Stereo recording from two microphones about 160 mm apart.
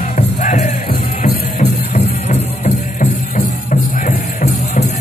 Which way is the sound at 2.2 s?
50° left (ahead or behind).